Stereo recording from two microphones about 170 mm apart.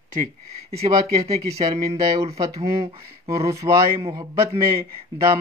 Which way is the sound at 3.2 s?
20° right (ahead or behind).